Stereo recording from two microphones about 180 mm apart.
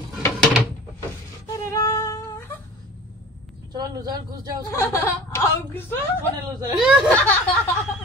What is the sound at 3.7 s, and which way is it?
Speech, 20° right (ahead or behind).